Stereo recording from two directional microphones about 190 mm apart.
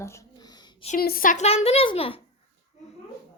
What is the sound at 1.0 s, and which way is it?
A woman's voice, 50° left (ahead or behind).